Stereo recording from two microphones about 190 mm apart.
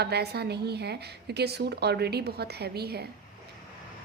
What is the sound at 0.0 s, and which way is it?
A woman's voice, 60° right (ahead or behind).